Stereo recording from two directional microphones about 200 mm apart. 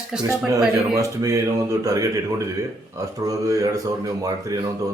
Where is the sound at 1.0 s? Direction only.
15° right (ahead or behind).